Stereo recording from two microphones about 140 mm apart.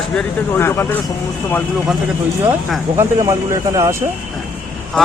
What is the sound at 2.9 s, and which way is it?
Speech, 25° right (ahead or behind).